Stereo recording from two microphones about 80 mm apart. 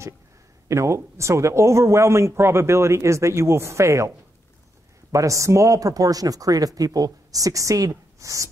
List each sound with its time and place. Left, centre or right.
0.7 s speech: right
5.1 s speech: right